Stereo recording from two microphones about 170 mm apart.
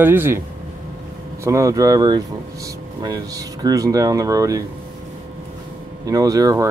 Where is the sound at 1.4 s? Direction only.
20° right (ahead or behind).